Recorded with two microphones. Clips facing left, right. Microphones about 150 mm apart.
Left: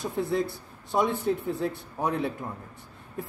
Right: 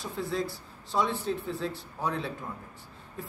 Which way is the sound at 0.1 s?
60° left (ahead or behind).